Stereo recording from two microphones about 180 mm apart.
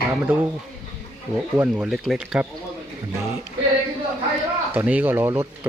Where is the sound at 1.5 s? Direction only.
10° right (ahead or behind).